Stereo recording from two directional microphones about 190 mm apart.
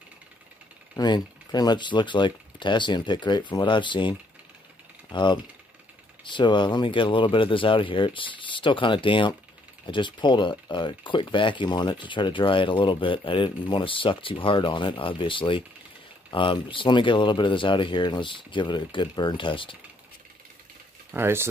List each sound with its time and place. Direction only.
0.9 s speech: 20° left (ahead or behind)
21.1 s speech: 10° right (ahead or behind)